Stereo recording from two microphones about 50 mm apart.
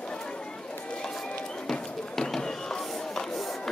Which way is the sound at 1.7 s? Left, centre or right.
Centre.